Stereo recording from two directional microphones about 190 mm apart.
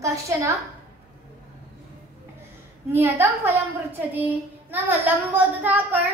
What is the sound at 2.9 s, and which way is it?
Speech, 15° right (ahead or behind).